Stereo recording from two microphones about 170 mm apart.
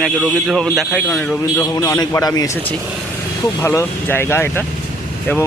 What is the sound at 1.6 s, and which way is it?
Speech, 20° left (ahead or behind).